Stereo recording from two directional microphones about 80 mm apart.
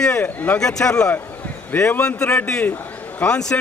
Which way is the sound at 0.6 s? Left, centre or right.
Centre.